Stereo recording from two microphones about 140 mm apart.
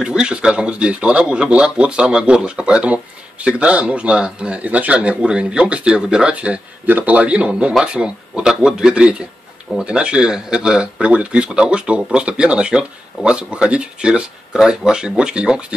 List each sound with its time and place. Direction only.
0.0 s speech: 5° right (ahead or behind)